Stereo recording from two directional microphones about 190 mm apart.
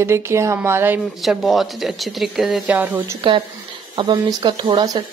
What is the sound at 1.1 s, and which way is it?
Speech, centre (ahead or behind).